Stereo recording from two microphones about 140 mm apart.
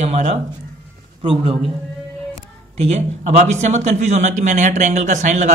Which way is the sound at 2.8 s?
55° right (ahead or behind).